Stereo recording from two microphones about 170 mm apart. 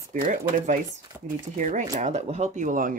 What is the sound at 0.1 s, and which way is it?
Speech, 50° right (ahead or behind).